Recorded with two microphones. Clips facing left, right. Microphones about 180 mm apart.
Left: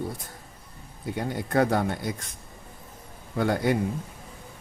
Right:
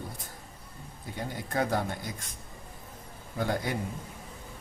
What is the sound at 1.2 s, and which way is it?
Speech, 65° left (ahead or behind).